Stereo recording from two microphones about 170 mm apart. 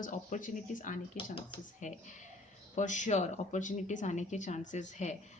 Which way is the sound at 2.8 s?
45° left (ahead or behind).